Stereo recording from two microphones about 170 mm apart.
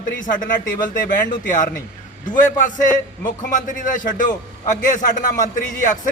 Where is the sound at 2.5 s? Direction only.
50° left (ahead or behind).